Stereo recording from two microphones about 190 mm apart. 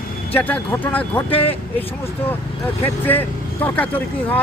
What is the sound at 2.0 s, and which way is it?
Speech, 10° left (ahead or behind).